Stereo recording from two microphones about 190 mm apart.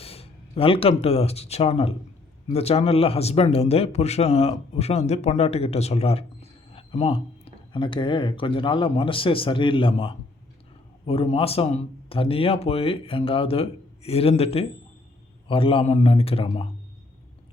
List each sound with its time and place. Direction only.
0.0 s a man's voice: 30° left (ahead or behind)